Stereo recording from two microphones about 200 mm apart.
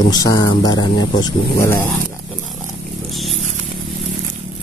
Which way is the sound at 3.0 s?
Centre (ahead or behind).